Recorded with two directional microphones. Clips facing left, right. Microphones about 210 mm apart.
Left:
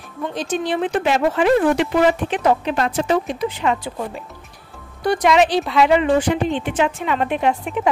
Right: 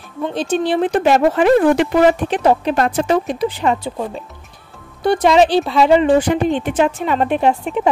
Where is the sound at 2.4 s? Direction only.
30° right (ahead or behind).